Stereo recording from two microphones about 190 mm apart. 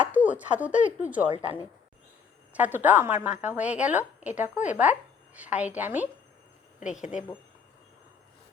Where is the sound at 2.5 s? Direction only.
10° right (ahead or behind).